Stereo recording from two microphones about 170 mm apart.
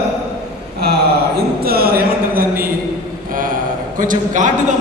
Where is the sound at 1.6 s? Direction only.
65° right (ahead or behind).